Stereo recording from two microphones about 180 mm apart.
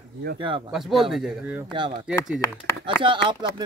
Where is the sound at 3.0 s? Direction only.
25° right (ahead or behind).